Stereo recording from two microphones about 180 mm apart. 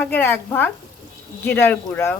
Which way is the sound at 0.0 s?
10° left (ahead or behind).